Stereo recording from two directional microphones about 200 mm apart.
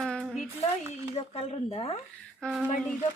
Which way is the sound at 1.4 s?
30° left (ahead or behind).